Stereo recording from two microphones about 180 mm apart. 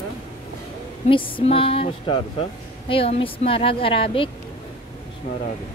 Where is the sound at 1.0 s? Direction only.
30° left (ahead or behind).